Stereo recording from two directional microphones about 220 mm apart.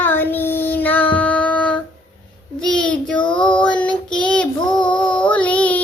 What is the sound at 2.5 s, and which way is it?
A child's voice, 5° left (ahead or behind).